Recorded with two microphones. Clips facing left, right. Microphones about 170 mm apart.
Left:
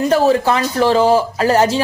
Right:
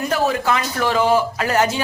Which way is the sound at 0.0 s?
30° left (ahead or behind).